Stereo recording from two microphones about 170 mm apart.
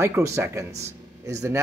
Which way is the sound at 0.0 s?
15° right (ahead or behind).